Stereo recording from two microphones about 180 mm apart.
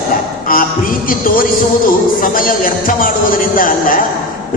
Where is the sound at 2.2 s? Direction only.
50° left (ahead or behind).